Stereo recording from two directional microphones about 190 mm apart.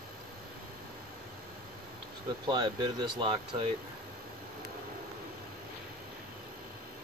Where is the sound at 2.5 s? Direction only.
20° right (ahead or behind).